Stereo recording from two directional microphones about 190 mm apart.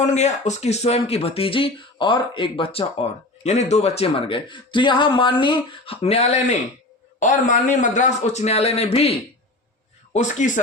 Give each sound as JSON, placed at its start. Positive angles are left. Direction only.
{"t": 0.0, "sound": "a man's voice", "side_deg": 35}